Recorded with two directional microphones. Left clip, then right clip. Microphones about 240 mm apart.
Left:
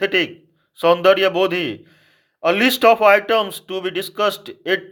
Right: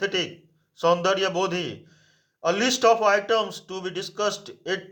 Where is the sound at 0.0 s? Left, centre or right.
Left.